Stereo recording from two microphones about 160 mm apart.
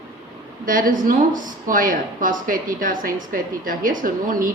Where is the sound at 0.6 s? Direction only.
60° right (ahead or behind).